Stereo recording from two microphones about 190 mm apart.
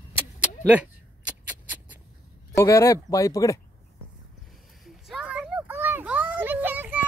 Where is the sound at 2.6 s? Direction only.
15° left (ahead or behind).